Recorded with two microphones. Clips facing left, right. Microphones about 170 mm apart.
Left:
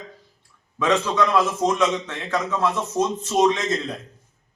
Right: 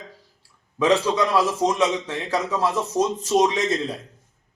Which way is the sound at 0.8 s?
35° right (ahead or behind).